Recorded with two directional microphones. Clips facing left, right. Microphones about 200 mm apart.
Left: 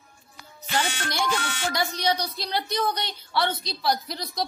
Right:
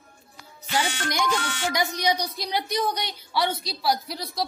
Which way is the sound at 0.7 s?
15° right (ahead or behind).